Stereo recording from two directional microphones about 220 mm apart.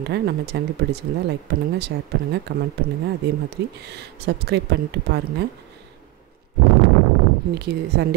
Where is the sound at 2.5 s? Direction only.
50° right (ahead or behind).